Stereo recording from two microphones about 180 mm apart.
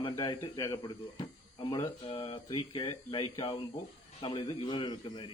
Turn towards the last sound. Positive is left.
turn(degrees=25)  # may be behind; listen again after turning